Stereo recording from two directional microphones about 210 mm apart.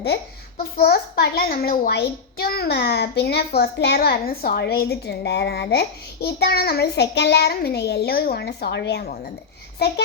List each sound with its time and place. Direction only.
0.6 s a child's voice: 50° left (ahead or behind)